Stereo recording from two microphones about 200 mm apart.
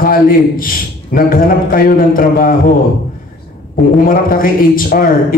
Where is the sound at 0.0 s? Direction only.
45° left (ahead or behind).